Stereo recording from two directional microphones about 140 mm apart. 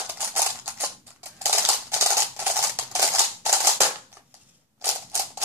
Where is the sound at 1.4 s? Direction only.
20° right (ahead or behind).